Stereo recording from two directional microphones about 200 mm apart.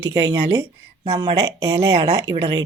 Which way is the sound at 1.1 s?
25° right (ahead or behind).